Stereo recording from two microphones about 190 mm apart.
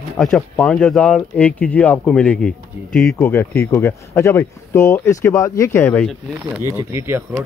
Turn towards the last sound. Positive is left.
turn(degrees=-10)  # may be behind; listen again after turning